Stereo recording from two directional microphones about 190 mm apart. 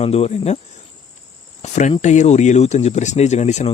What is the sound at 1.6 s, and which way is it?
Speech, 40° left (ahead or behind).